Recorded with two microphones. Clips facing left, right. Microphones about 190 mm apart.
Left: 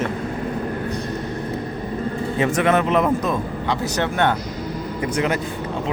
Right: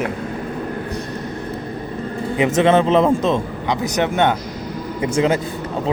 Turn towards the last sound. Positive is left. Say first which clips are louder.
# right 4 dB
turn(degrees=-25)  # may be behind; listen again after turning